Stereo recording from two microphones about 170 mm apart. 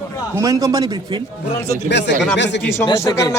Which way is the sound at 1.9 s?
90° left.